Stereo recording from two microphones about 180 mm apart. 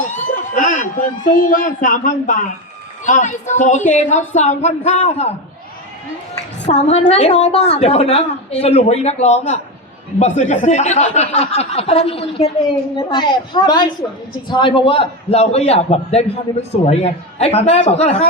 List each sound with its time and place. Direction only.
0.1 s a man's voice: 45° left (ahead or behind)
6.7 s a man's voice: 35° left (ahead or behind)